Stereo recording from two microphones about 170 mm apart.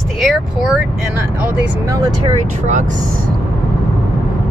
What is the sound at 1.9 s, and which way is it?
Speech, 20° right (ahead or behind).